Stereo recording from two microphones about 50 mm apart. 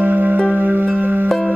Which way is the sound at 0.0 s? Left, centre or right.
Right.